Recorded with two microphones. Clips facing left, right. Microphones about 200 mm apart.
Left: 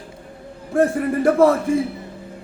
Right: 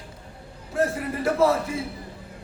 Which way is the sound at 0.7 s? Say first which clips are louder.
Left 7 dB; 50° left (ahead or behind).